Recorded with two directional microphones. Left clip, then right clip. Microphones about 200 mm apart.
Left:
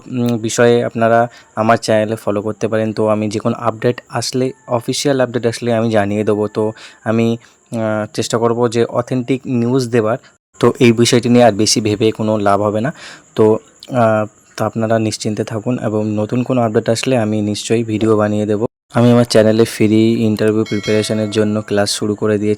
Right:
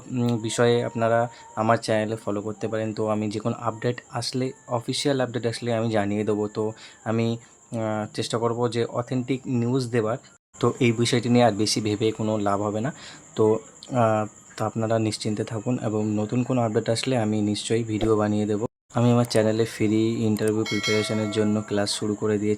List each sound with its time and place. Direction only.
0.1 s speech: 30° left (ahead or behind)
20.7 s speech: centre (ahead or behind)
21.0 s speech: 35° left (ahead or behind)